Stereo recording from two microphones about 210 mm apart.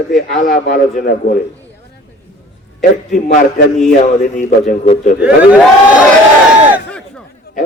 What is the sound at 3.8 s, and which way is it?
A man's voice, 40° left (ahead or behind).